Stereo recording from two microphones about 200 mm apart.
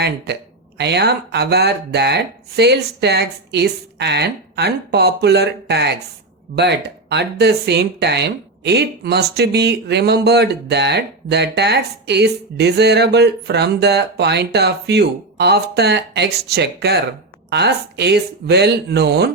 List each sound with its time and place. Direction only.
0.3 s speech: 55° right (ahead or behind)